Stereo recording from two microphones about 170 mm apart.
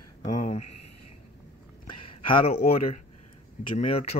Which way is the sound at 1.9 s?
30° left (ahead or behind).